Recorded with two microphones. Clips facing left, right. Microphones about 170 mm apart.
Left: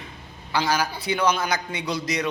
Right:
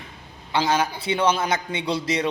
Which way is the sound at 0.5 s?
25° right (ahead or behind).